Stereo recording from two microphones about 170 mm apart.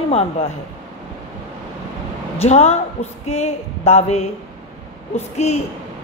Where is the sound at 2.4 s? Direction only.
40° left (ahead or behind).